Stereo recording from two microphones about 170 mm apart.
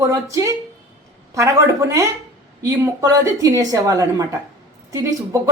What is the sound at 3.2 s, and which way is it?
Speech, 20° right (ahead or behind).